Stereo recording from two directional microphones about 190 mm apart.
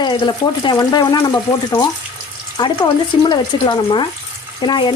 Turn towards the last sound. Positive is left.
turn(degrees=25)  # may be behind; listen again after turning